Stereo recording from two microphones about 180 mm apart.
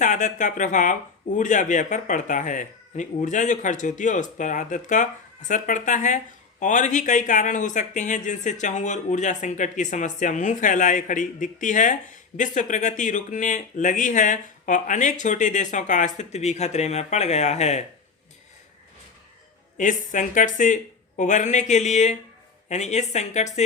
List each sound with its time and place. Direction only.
0.0 s speech: 45° left (ahead or behind)
19.7 s speech: 45° left (ahead or behind)